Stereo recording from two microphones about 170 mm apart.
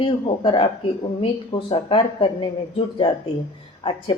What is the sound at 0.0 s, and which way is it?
Speech, 30° left (ahead or behind).